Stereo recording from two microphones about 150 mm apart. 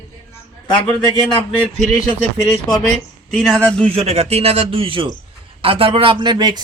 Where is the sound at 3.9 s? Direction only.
45° right (ahead or behind); by 6.6 s 30° right (ahead or behind).